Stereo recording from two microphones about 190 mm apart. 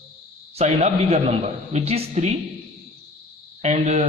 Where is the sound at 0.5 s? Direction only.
35° right (ahead or behind).